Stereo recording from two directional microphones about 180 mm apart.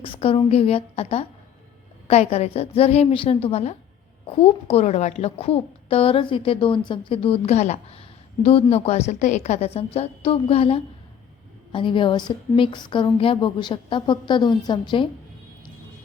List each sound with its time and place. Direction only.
0.0 s a woman's voice: 30° left (ahead or behind)